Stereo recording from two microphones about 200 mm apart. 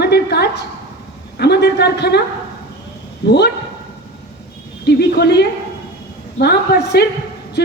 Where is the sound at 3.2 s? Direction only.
55° left (ahead or behind).